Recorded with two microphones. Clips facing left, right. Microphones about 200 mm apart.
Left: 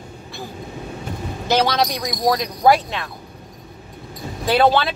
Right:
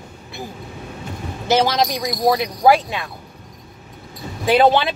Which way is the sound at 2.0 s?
5° right (ahead or behind).